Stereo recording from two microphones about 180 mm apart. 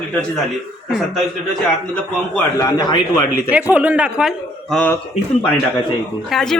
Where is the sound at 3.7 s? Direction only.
10° right (ahead or behind).